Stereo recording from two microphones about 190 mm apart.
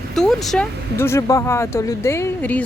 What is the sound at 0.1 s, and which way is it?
Speech, centre (ahead or behind).